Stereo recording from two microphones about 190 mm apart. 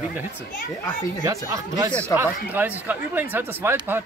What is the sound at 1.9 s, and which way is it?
Speech, 10° left (ahead or behind).